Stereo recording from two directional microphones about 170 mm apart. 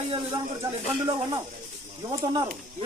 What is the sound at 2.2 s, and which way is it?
Speech, 25° right (ahead or behind).